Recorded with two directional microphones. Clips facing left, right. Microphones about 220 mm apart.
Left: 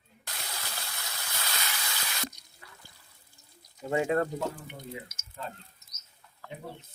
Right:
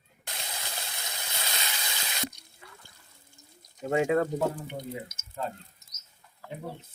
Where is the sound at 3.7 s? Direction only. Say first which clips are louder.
Right 3 dB; 20° right (ahead or behind).